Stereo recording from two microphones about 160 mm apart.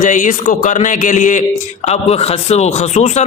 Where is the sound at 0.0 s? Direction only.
50° left (ahead or behind).